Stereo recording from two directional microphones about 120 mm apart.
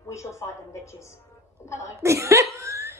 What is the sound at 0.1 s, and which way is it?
Speech, 25° left (ahead or behind).